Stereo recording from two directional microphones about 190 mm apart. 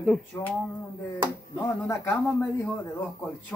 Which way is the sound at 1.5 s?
15° left (ahead or behind).